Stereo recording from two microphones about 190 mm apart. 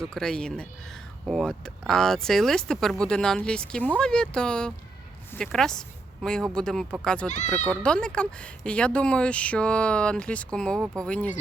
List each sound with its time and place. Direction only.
0.0 s speech: centre (ahead or behind)
7.3 s speech: 40° left (ahead or behind)
7.5 s speech: 5° left (ahead or behind)